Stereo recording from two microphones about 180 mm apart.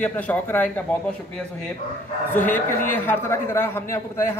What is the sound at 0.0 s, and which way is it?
Speech, 10° left (ahead or behind).